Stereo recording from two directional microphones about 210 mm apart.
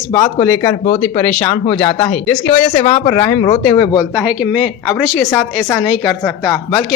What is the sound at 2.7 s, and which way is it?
Speech, 25° left (ahead or behind).